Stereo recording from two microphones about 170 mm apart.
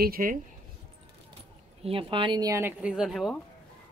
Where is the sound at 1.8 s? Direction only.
30° right (ahead or behind).